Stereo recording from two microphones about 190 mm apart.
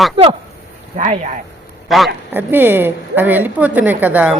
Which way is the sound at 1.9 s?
Centre (ahead or behind).